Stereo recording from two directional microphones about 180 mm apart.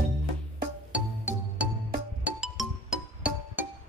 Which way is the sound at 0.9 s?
5° right (ahead or behind).